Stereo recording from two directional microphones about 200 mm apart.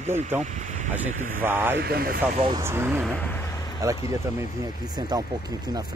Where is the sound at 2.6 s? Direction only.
10° right (ahead or behind).